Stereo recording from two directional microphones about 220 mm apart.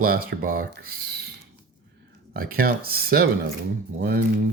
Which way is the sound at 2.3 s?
40° right (ahead or behind).